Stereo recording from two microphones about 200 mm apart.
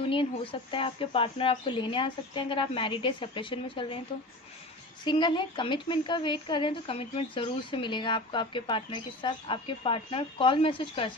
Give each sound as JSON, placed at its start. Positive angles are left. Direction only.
{"t": 0.0, "sound": "a woman's voice", "side_deg": 25}
{"t": 5.0, "sound": "a woman's voice", "side_deg": 25}